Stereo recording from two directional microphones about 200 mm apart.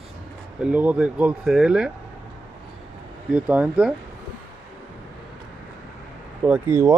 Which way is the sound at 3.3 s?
5° right (ahead or behind).